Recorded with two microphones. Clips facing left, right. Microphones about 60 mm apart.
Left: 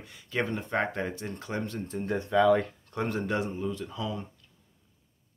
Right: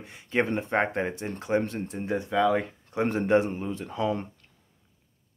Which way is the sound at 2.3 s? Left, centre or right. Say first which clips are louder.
Left 2 dB; centre.